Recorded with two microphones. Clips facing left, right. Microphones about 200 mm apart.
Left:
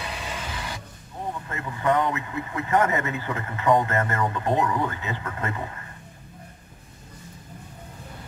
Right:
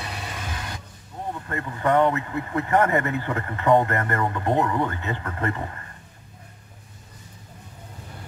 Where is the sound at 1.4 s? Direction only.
55° right (ahead or behind).